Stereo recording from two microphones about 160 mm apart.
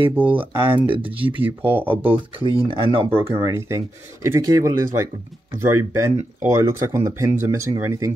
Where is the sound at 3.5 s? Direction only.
15° right (ahead or behind).